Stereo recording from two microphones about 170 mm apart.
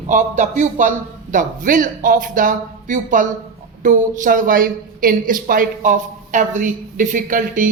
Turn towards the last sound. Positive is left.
turn(degrees=-50)  # may be behind; listen again after turning